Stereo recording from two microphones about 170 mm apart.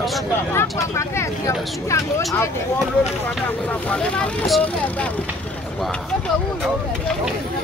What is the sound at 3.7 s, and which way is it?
Speech, 5° left (ahead or behind).